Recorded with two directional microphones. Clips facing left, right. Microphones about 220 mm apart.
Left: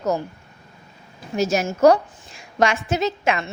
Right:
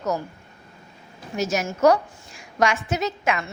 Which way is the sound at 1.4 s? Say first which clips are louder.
Left 4 dB; 30° left (ahead or behind).